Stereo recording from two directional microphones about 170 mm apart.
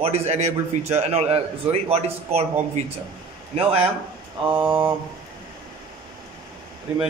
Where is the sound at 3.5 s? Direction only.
35° right (ahead or behind).